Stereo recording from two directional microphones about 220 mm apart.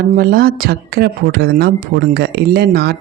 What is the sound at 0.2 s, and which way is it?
Speech, 40° right (ahead or behind).